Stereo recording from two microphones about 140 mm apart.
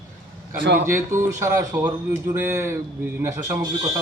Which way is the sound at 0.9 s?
20° right (ahead or behind).